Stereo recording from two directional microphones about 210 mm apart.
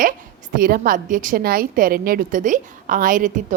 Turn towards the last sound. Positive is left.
turn(degrees=-40)  # may be behind; listen again after turning